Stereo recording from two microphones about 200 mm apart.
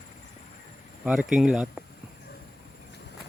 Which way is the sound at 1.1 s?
5° right (ahead or behind).